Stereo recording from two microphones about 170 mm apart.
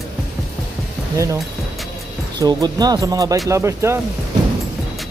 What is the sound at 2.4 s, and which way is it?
Speech, 25° right (ahead or behind).